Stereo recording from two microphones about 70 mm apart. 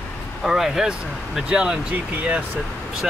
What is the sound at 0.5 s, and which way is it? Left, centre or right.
Speech, centre.